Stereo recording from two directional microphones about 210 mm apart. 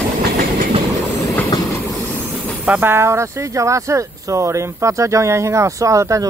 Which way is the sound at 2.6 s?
10° right (ahead or behind).